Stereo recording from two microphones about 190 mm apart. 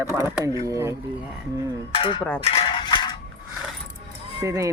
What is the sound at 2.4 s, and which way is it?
Mechanisms, 30° left (ahead or behind).